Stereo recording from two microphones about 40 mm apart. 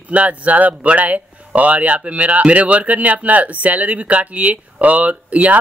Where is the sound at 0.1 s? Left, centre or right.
Right.